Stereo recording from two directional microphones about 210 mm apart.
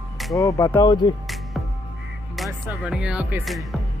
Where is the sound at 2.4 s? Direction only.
10° right (ahead or behind).